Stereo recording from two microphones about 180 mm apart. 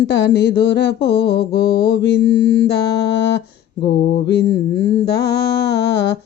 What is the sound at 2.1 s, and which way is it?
Mantra, 80° left.